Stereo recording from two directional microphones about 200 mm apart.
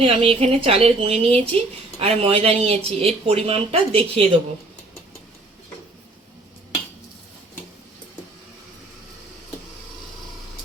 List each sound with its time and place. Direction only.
0.0 s a woman's voice: 30° right (ahead or behind)